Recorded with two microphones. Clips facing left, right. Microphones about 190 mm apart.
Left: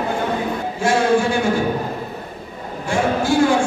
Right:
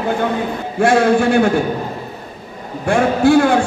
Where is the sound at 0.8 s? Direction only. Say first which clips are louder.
Right 4 dB; 60° right (ahead or behind).